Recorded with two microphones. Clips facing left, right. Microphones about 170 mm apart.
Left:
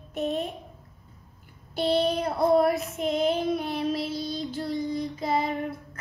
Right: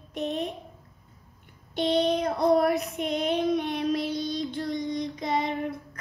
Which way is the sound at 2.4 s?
Centre (ahead or behind).